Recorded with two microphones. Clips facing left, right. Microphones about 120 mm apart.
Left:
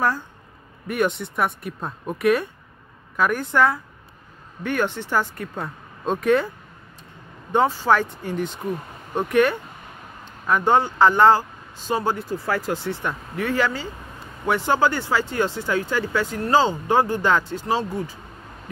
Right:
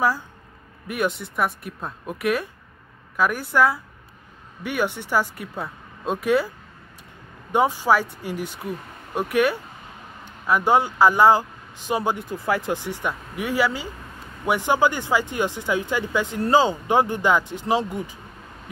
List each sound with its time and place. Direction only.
0.8 s speech: centre (ahead or behind)
7.5 s speech: 10° right (ahead or behind)